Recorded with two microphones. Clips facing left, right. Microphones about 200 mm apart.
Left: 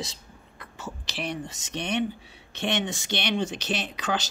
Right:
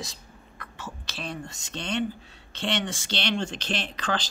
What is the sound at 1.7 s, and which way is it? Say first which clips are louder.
Speech: left 1 dB; 15° left (ahead or behind).